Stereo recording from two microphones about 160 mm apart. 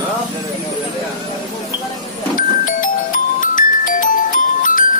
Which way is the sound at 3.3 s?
55° left (ahead or behind).